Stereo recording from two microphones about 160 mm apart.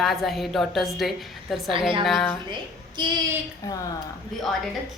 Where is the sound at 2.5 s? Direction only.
30° right (ahead or behind).